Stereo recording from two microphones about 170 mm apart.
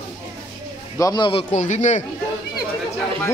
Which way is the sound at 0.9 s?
20° left (ahead or behind).